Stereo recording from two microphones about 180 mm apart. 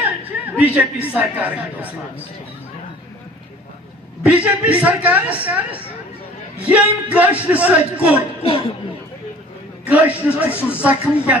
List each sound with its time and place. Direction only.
0.2 s a sound: 10° right (ahead or behind)
1.1 s a man's voice: 10° right (ahead or behind)
4.2 s a man's voice: 5° right (ahead or behind)
6.6 s a man's voice: 10° right (ahead or behind)
8.4 s speech: 30° left (ahead or behind)
9.8 s a man's voice: 10° right (ahead or behind)